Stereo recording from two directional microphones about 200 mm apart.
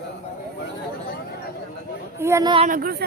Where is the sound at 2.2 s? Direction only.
15° right (ahead or behind).